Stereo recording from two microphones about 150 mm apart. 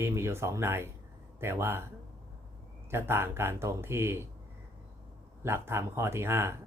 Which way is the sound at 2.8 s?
15° right (ahead or behind).